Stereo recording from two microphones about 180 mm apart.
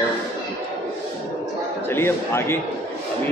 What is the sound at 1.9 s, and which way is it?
Speech, 15° left (ahead or behind).